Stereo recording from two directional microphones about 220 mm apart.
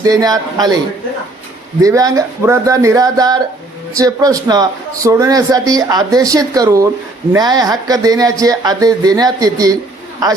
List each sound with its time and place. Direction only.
0.0 s speech: 15° right (ahead or behind)
1.8 s speech: 15° right (ahead or behind)